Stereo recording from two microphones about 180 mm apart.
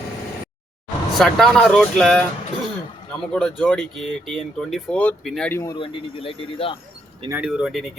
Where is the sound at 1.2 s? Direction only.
5° left (ahead or behind).